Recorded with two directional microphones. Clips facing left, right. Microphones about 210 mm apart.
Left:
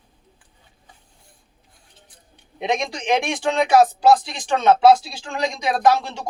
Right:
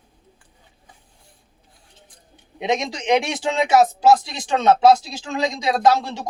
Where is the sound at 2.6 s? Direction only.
20° right (ahead or behind).